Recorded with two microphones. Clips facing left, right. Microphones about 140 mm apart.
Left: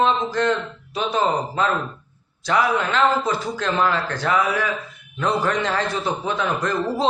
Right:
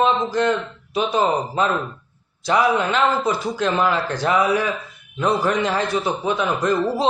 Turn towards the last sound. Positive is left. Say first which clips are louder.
# right 3 dB
turn(degrees=-15)  # may be behind; listen again after turning